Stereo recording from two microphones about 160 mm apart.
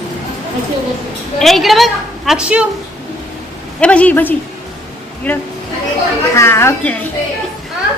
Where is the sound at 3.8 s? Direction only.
10° left (ahead or behind).